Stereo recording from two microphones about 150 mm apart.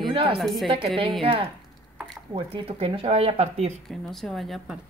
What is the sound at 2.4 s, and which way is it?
Speech, 40° right (ahead or behind).